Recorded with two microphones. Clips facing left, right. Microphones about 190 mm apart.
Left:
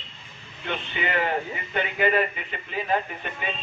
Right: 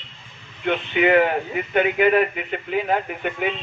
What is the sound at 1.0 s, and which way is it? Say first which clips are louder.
Speech: right 9 dB; 65° right (ahead or behind).